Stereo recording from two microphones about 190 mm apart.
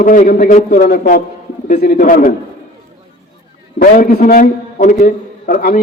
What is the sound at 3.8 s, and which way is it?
A man's voice, 50° left (ahead or behind).